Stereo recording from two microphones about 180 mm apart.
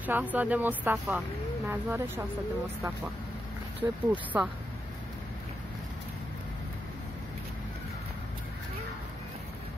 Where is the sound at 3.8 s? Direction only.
10° right (ahead or behind).